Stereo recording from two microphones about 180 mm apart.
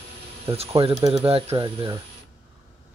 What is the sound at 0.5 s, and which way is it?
Speech, 35° right (ahead or behind).